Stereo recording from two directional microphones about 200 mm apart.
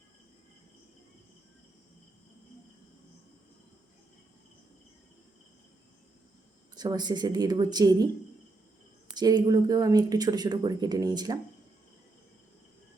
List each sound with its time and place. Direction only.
6.7 s speech: 20° right (ahead or behind)
9.1 s speech: 20° right (ahead or behind)